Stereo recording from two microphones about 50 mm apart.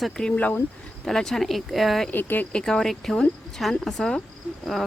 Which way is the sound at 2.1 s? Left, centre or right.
Left.